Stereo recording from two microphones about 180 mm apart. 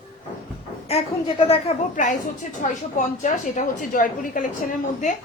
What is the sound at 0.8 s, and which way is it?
Speech, 35° left (ahead or behind).